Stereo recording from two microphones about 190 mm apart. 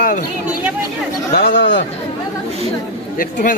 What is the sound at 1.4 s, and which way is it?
Speech, 70° left (ahead or behind).